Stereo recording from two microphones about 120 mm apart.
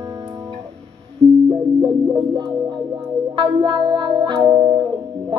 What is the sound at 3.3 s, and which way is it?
Music, 40° right (ahead or behind).